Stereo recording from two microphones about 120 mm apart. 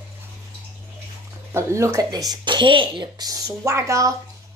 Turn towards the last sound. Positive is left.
turn(degrees=-25)  # may be behind; listen again after turning